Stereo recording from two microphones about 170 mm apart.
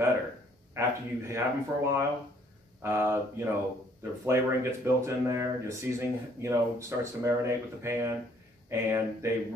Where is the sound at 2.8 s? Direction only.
15° right (ahead or behind).